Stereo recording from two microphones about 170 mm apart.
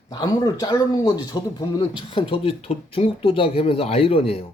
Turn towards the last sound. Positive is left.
turn(degrees=35)  # may be behind; listen again after turning